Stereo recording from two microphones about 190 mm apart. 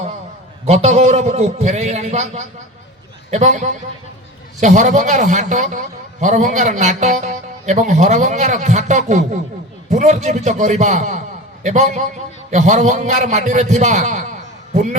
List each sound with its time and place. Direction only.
0.6 s a man's voice: 35° right (ahead or behind)